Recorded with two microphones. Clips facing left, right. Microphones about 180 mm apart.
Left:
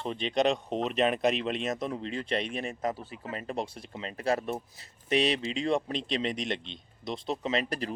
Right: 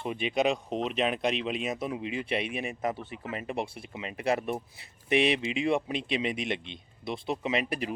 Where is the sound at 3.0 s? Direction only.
35° left (ahead or behind).